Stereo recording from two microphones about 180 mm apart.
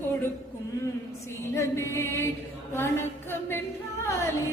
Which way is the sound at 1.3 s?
15° left (ahead or behind).